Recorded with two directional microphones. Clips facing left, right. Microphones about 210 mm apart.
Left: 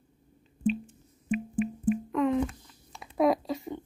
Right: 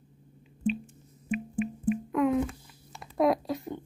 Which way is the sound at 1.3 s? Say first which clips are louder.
Left 2 dB; centre (ahead or behind).